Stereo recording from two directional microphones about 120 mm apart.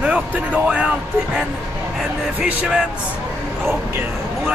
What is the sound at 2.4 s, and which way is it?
Speech, centre (ahead or behind).